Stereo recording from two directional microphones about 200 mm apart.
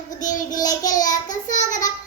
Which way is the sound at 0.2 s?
40° left (ahead or behind).